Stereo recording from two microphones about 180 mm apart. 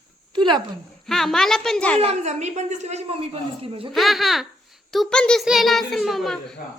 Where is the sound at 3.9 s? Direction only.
Centre (ahead or behind).